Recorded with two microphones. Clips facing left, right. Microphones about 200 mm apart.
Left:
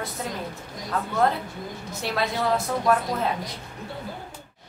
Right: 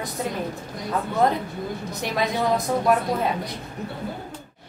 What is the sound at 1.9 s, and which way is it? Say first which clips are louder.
A woman's voice: right 1 dB; 15° right (ahead or behind).